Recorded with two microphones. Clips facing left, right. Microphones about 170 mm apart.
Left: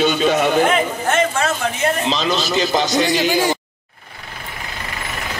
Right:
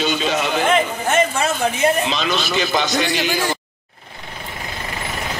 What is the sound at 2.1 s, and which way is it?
A man's voice, 35° left (ahead or behind).